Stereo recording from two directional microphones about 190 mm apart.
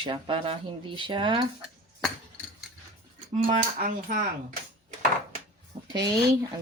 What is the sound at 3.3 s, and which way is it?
Speech, 45° right (ahead or behind).